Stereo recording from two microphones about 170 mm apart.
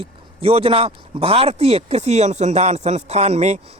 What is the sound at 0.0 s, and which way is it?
Speech, 35° right (ahead or behind).